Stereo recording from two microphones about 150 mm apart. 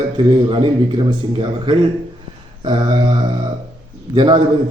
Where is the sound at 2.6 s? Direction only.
30° right (ahead or behind).